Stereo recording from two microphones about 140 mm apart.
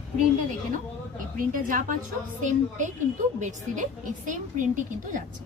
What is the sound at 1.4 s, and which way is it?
A woman's voice, 75° right (ahead or behind).